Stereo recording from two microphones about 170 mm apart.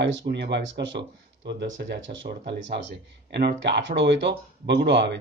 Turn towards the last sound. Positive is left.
turn(degrees=-90)